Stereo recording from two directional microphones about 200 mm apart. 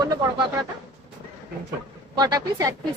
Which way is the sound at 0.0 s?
20° right (ahead or behind).